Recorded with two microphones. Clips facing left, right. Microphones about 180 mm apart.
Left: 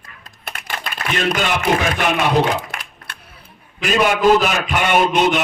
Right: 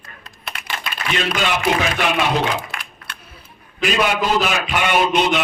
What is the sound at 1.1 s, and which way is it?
Speech, 50° left (ahead or behind).